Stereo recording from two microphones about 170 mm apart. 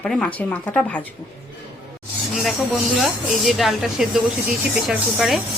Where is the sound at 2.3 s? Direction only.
Centre (ahead or behind).